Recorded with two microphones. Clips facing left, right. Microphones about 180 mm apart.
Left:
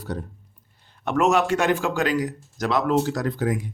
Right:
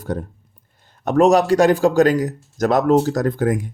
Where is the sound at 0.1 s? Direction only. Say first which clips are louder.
Right 6 dB; 50° right (ahead or behind).